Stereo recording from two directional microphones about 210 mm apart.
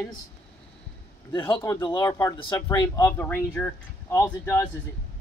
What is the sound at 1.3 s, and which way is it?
Speech, 25° left (ahead or behind).